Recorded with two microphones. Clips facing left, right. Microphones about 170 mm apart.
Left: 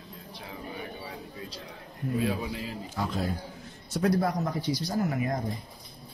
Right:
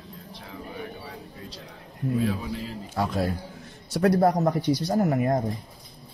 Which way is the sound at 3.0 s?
70° right (ahead or behind).